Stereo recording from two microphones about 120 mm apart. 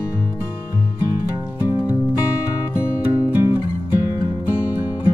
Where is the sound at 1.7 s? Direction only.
35° left (ahead or behind).